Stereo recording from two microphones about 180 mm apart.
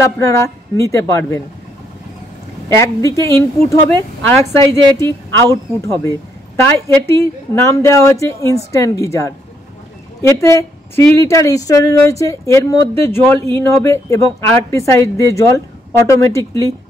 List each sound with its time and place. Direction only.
0.2 s speech: 15° left (ahead or behind)
2.7 s speech: 15° left (ahead or behind)